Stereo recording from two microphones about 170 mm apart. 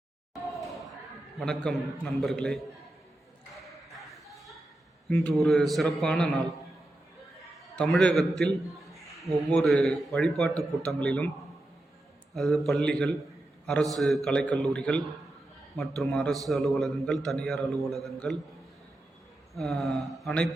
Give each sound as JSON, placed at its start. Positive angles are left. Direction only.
{"t": 1.4, "sound": "a man's voice", "side_deg": 0}
{"t": 3.7, "sound": "a sound", "side_deg": 0}
{"t": 5.0, "sound": "a man's voice", "side_deg": 5}
{"t": 7.8, "sound": "a man's voice", "side_deg": 5}
{"t": 12.3, "sound": "a man's voice", "side_deg": 0}
{"t": 19.5, "sound": "a man's voice", "side_deg": 0}